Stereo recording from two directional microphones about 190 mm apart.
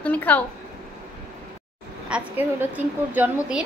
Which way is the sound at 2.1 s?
10° right (ahead or behind).